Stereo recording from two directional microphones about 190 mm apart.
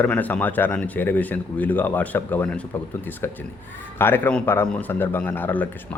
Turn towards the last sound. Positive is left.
turn(degrees=10)  # may be behind; listen again after turning